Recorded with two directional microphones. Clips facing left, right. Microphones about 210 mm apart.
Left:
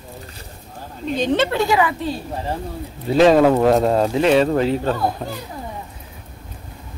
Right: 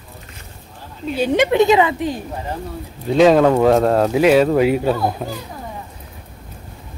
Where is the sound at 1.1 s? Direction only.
10° right (ahead or behind).